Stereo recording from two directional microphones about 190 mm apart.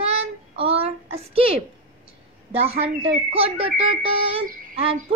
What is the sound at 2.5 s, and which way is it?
A woman's voice, 30° right (ahead or behind).